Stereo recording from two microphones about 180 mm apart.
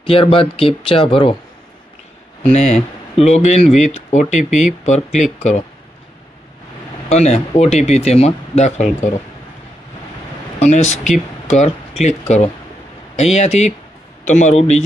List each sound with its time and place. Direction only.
0.0 s speech: 30° left (ahead or behind)
2.5 s speech: 35° left (ahead or behind)
7.1 s speech: 35° left (ahead or behind)
10.6 s speech: 40° left (ahead or behind)